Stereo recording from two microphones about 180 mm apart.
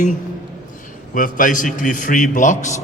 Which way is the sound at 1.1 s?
45° left (ahead or behind).